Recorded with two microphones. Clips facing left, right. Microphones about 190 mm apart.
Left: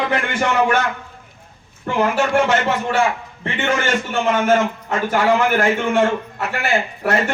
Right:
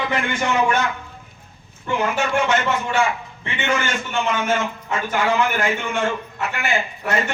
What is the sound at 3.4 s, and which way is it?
A man's voice, 45° left (ahead or behind).